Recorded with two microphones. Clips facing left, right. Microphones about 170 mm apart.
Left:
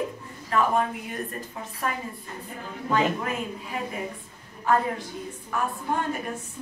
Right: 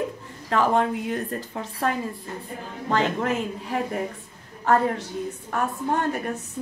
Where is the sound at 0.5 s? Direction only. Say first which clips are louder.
Right 2 dB; 75° right (ahead or behind).